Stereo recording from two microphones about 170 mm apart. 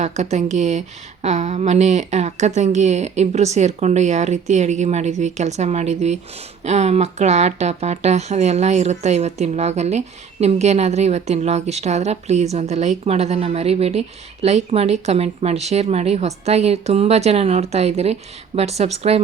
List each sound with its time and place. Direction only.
0.0 s a woman's voice: 40° right (ahead or behind)